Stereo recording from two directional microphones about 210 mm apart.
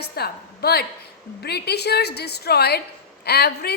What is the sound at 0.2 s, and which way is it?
A woman's voice, 50° left (ahead or behind).